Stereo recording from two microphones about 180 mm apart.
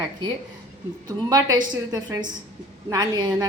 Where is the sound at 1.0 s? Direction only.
20° right (ahead or behind).